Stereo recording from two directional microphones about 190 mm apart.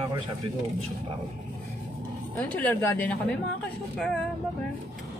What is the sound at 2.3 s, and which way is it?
Speech, 10° left (ahead or behind).